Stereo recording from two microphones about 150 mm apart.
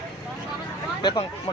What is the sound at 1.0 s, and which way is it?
Speech, 30° left (ahead or behind).